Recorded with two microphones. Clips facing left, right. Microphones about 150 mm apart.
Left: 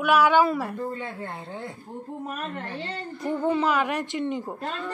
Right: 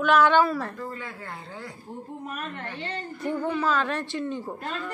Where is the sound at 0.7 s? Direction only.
25° left (ahead or behind).